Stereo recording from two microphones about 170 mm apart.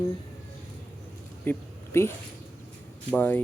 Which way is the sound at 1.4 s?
15° left (ahead or behind).